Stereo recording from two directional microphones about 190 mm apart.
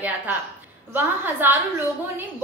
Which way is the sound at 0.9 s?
10° right (ahead or behind).